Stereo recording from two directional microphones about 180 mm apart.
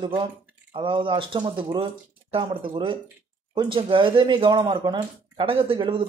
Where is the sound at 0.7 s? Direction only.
30° right (ahead or behind).